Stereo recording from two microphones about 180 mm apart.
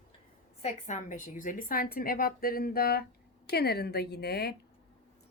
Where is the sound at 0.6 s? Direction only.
40° left (ahead or behind); by 4.5 s 60° left (ahead or behind).